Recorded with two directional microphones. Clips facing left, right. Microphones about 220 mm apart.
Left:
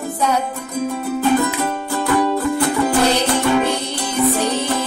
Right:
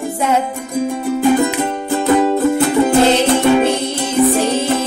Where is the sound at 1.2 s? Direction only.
15° right (ahead or behind).